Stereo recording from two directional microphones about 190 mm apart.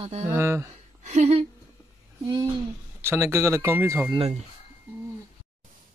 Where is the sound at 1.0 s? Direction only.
35° right (ahead or behind).